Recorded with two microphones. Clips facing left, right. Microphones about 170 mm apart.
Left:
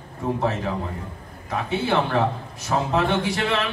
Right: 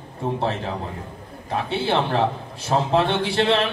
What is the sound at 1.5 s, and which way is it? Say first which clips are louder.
A man's voice: even; 30° right (ahead or behind).